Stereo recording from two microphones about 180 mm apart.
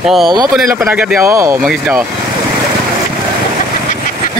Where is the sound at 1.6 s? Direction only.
Centre (ahead or behind).